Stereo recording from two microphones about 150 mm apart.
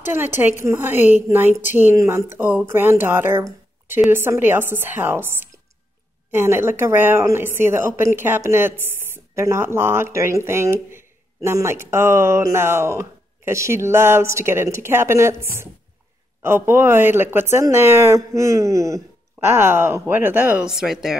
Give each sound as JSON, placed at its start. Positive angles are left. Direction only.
{"t": 0.1, "sound": "speech", "side_deg": -15}